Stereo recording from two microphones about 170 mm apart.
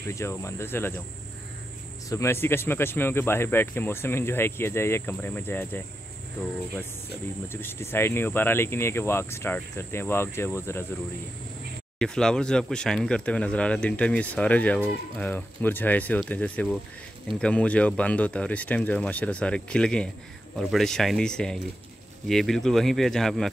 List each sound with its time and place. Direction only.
0.1 s speech: 15° left (ahead or behind)
2.0 s speech: 15° left (ahead or behind)
7.4 s speech: 15° left (ahead or behind)
12.0 s speech: 5° left (ahead or behind)